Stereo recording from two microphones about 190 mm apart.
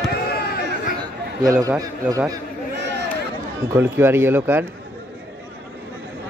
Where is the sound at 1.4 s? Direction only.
20° right (ahead or behind).